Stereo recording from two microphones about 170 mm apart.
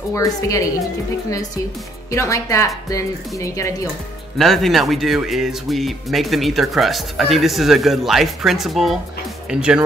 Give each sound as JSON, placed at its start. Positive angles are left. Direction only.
{"t": 0.1, "sound": "a woman's voice", "side_deg": 20}
{"t": 2.0, "sound": "a woman's voice", "side_deg": 20}
{"t": 4.4, "sound": "speech", "side_deg": 0}